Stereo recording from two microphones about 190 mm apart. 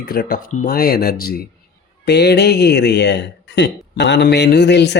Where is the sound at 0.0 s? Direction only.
55° left (ahead or behind).